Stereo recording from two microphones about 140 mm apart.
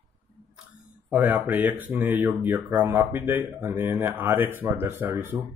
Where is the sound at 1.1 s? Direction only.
10° right (ahead or behind).